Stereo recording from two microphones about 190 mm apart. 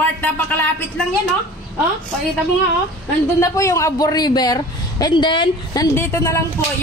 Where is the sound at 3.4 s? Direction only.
15° left (ahead or behind).